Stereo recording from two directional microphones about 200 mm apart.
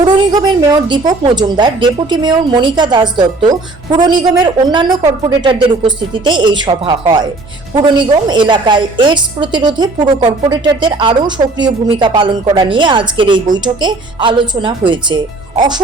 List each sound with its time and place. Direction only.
0.0 s a woman's voice: 20° right (ahead or behind)